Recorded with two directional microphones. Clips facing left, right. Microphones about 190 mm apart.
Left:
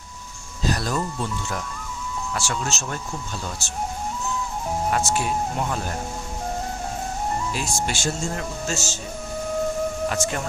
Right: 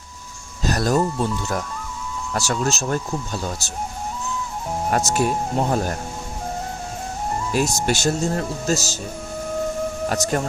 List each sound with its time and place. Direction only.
0.6 s a sound: 45° right (ahead or behind)
2.3 s speech: 40° right (ahead or behind)
4.9 s speech: 40° right (ahead or behind)
7.5 s speech: 45° right (ahead or behind)
10.1 s speech: 40° right (ahead or behind)